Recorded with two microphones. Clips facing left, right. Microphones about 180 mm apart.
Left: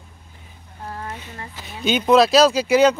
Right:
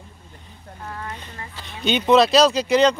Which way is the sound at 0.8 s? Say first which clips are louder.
Left 2 dB; 30° left (ahead or behind).